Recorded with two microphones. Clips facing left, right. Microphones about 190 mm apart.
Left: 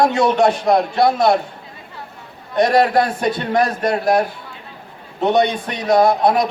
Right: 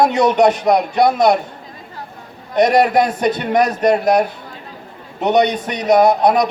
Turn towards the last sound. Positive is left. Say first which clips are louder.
# right 2 dB
turn(degrees=-20)  # may be behind; listen again after turning